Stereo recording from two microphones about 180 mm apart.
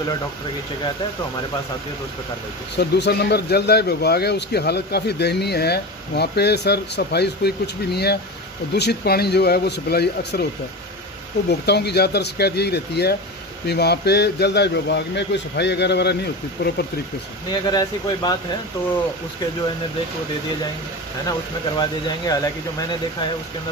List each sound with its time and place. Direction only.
2.7 s speech: 70° left (ahead or behind)
11.6 s a man's voice: 65° left (ahead or behind)
17.5 s speech: 25° left (ahead or behind)
21.3 s speech: 25° left (ahead or behind)